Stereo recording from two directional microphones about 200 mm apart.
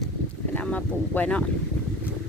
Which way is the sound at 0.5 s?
5° left (ahead or behind).